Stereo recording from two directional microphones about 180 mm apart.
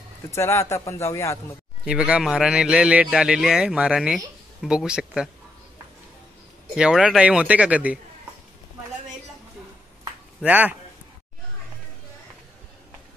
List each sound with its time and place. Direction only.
0.3 s speech: 15° left (ahead or behind)
1.9 s speech: 5° right (ahead or behind)
6.7 s a man's voice: 5° right (ahead or behind)
10.4 s a man's voice: 10° right (ahead or behind)